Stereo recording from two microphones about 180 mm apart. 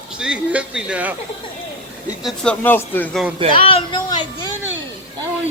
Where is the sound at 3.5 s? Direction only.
30° left (ahead or behind).